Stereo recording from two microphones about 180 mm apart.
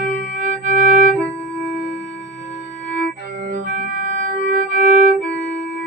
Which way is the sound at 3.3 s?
50° right (ahead or behind).